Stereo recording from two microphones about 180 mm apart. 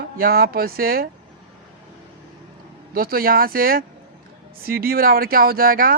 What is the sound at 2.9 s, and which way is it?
Speech, 55° right (ahead or behind).